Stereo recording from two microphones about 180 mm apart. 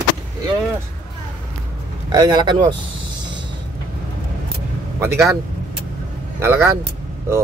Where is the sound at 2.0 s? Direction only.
25° right (ahead or behind).